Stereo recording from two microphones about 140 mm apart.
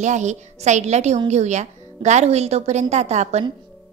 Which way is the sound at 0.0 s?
55° right (ahead or behind).